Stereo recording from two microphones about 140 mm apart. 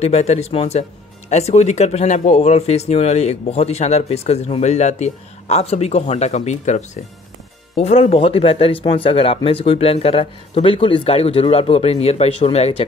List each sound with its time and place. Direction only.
0.0 s speech: 50° left (ahead or behind)